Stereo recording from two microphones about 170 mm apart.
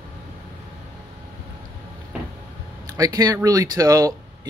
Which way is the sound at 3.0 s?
20° right (ahead or behind).